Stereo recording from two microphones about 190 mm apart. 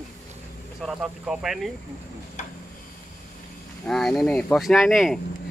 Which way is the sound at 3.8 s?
Centre (ahead or behind).